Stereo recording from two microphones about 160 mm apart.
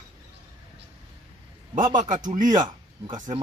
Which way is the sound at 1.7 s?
55° right (ahead or behind).